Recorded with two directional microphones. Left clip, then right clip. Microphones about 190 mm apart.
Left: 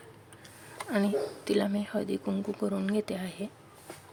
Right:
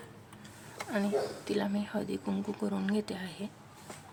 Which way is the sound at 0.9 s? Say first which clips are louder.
Left 2 dB; 25° left (ahead or behind).